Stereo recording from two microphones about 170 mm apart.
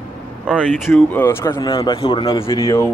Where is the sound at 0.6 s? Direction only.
Centre (ahead or behind).